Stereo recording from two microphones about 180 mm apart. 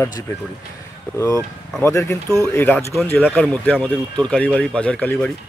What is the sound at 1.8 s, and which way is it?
Speech, 15° left (ahead or behind).